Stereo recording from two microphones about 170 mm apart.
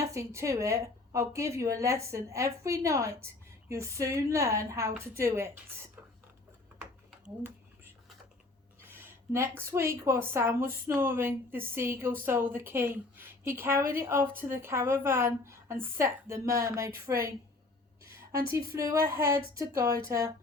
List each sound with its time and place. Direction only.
0.0 s a woman's voice: 15° right (ahead or behind)
8.8 s a woman's voice: 15° right (ahead or behind)